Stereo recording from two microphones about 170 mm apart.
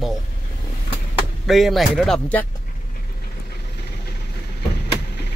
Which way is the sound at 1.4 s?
Centre (ahead or behind).